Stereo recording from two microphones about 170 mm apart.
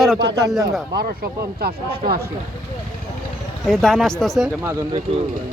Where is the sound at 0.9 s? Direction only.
65° right (ahead or behind).